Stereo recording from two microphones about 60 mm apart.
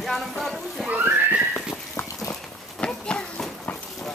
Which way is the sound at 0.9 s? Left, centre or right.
Right.